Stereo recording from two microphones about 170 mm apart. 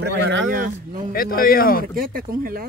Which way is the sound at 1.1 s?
60° left (ahead or behind).